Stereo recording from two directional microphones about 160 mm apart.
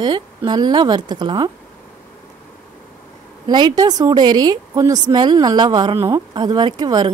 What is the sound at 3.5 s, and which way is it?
A woman's voice, 25° right (ahead or behind).